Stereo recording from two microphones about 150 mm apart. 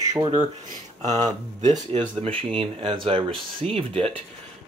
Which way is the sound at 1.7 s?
35° right (ahead or behind).